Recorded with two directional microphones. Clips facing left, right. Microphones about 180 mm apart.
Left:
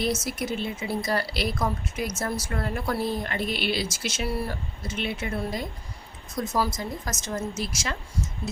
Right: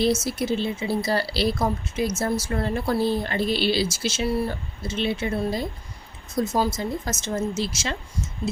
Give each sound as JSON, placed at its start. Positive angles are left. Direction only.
{"t": 0.3, "sound": "speech", "side_deg": -30}